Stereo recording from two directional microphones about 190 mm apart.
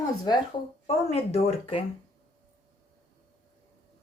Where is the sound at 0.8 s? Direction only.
35° left (ahead or behind).